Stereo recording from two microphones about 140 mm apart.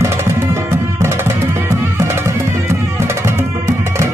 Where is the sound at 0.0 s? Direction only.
20° right (ahead or behind).